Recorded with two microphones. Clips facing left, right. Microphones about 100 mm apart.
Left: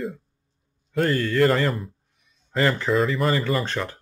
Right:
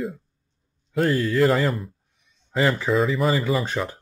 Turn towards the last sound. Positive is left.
turn(degrees=-10)  # may be behind; listen again after turning